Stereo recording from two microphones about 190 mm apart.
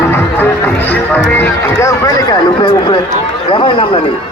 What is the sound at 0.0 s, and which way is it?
Music, 10° left (ahead or behind).